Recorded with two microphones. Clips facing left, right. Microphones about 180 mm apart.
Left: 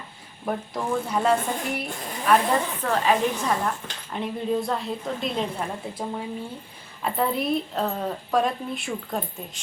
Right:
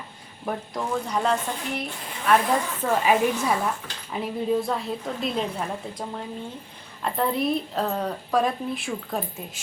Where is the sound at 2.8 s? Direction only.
15° right (ahead or behind).